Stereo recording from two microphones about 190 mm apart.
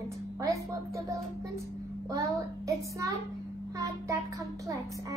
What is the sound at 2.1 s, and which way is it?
A child's voice, 15° right (ahead or behind).